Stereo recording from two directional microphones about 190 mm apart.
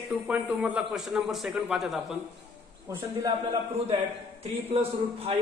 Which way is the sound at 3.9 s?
30° right (ahead or behind).